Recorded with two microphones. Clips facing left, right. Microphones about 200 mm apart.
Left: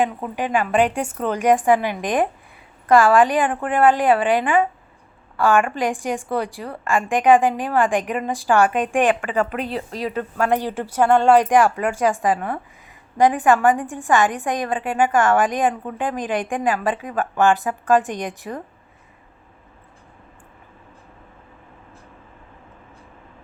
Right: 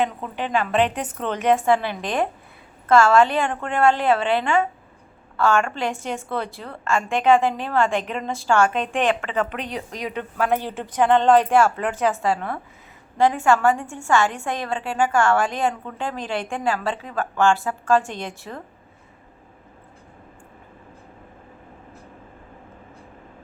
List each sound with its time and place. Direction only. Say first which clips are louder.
0.0 s a woman's voice: left 2 dB; 10° left (ahead or behind)